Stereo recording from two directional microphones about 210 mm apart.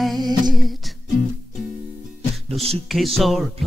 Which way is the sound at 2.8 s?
Centre (ahead or behind).